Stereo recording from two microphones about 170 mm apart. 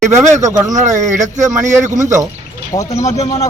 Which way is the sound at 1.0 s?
45° right (ahead or behind).